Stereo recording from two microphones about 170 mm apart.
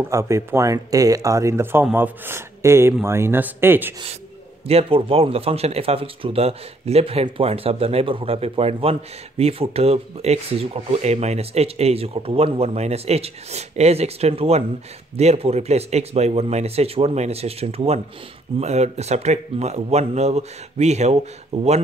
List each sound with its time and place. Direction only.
0.0 s speech: 15° right (ahead or behind)
4.6 s speech: 35° right (ahead or behind)